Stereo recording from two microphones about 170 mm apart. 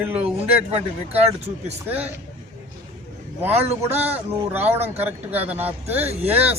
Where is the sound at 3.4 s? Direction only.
10° right (ahead or behind).